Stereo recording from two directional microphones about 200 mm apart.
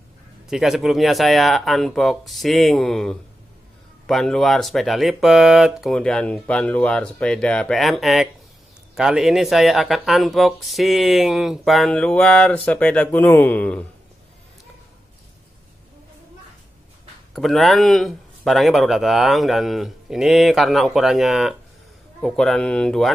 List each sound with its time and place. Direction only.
0.5 s speech: centre (ahead or behind)
17.3 s speech: centre (ahead or behind)